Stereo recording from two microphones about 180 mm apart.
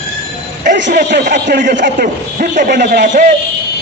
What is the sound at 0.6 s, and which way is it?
Speech, 45° right (ahead or behind).